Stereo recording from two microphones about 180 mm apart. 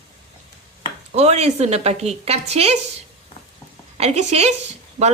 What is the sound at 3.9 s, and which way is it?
Speech, 35° right (ahead or behind).